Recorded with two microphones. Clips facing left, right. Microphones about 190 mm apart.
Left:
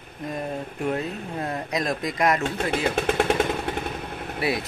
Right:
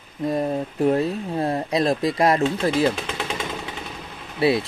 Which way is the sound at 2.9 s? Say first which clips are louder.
Left 6 dB; 55° left (ahead or behind).